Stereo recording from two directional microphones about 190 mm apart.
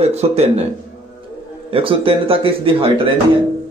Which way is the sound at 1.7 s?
30° right (ahead or behind).